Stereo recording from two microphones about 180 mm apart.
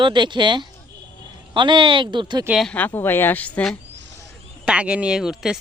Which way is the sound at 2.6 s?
10° left (ahead or behind).